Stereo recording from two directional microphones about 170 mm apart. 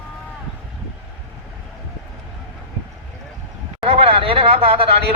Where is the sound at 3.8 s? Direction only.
35° right (ahead or behind).